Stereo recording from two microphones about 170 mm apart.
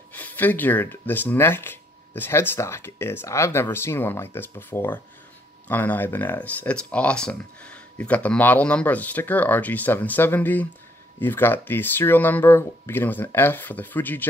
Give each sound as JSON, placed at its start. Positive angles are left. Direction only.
{"t": 0.1, "sound": "speech", "side_deg": 10}